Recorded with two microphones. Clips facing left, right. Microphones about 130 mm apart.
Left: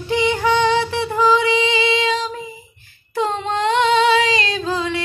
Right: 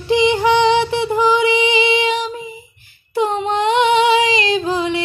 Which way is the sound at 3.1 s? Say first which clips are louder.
Right 3 dB; 15° right (ahead or behind).